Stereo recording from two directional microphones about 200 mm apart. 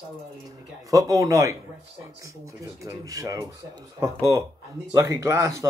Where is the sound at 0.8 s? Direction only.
15° right (ahead or behind).